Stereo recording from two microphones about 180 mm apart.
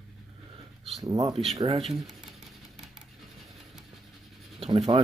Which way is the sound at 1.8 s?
Centre (ahead or behind).